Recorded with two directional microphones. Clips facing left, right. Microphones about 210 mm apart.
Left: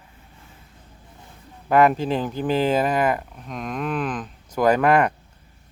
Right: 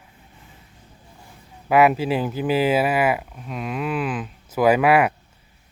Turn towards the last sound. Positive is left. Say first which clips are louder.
# right 1 dB
turn(degrees=-5)  # may be behind; listen again after turning